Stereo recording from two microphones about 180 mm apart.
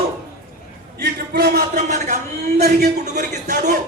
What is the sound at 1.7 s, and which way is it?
Speech, 40° right (ahead or behind).